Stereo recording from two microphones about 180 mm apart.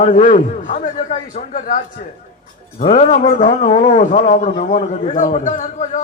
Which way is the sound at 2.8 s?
40° left (ahead or behind).